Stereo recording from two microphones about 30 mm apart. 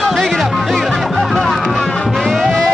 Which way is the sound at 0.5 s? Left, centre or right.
Centre.